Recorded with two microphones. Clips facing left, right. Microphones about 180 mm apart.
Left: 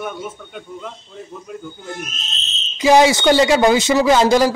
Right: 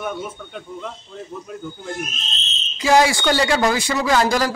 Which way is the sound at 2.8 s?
20° left (ahead or behind).